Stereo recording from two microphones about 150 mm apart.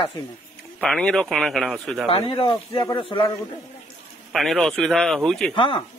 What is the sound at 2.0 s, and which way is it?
A man's voice, 40° left (ahead or behind).